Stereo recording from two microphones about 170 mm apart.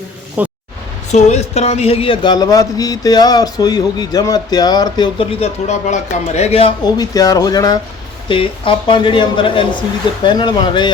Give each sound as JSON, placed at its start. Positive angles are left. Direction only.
{"t": 0.4, "sound": "speech", "side_deg": -10}
{"t": 1.1, "sound": "speech", "side_deg": 40}